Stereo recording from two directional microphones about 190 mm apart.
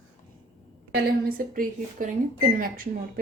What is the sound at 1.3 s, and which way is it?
Speech, 50° right (ahead or behind).